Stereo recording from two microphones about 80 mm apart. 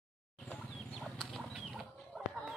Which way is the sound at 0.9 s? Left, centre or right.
Centre.